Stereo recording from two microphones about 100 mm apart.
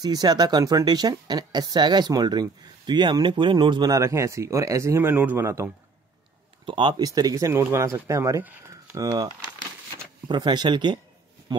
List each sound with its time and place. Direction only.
0.0 s speech: 40° right (ahead or behind)
3.9 s speech: 30° right (ahead or behind)
5.1 s speech: 15° right (ahead or behind)
6.6 s speech: 55° right (ahead or behind)
7.0 s speech: 40° right (ahead or behind)
10.2 s speech: 50° right (ahead or behind)